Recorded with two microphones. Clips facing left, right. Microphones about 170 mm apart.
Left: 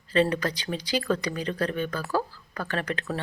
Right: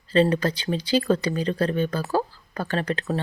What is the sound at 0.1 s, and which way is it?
Speech, 30° right (ahead or behind).